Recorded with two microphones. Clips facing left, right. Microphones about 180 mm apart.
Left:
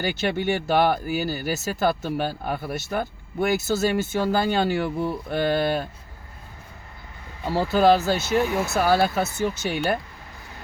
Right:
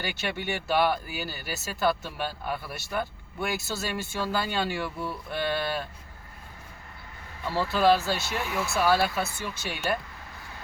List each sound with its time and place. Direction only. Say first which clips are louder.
0.0 s speech: left 8 dB; 40° left (ahead or behind)
7.7 s speech: left 5 dB; 45° left (ahead or behind)